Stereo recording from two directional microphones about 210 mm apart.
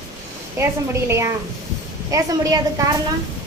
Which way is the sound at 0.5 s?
10° right (ahead or behind).